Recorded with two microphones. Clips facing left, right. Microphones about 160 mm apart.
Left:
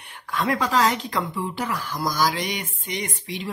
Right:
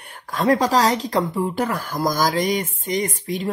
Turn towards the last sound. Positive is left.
turn(degrees=-45)  # may be behind; listen again after turning